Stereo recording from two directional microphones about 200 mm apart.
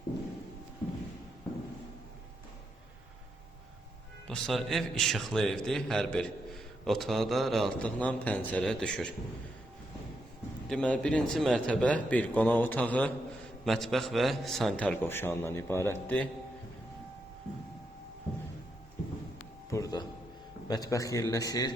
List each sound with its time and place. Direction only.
4.3 s a man's voice: 5° left (ahead or behind)
10.7 s a man's voice: 5° left (ahead or behind)
19.7 s music: 15° left (ahead or behind)
20.7 s a man's voice: 20° left (ahead or behind)